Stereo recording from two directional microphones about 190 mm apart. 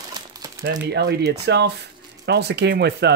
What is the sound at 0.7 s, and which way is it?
Speech, 60° right (ahead or behind).